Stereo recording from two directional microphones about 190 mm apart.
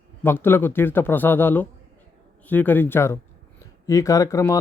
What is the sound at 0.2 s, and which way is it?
Speech, 10° left (ahead or behind).